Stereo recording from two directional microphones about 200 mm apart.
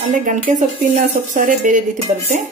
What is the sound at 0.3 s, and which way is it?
Speech, 40° right (ahead or behind).